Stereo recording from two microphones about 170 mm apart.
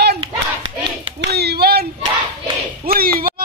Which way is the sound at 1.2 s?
75° right (ahead or behind).